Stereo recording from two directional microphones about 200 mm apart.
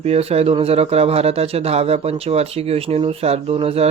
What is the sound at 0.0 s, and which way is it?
Speech, 30° right (ahead or behind).